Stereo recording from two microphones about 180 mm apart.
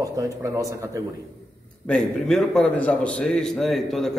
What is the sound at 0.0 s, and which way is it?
Speech, 20° right (ahead or behind).